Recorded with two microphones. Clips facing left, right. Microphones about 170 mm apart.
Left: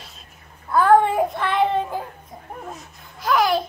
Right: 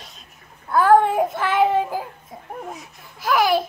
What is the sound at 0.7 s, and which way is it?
Child singing, centre (ahead or behind).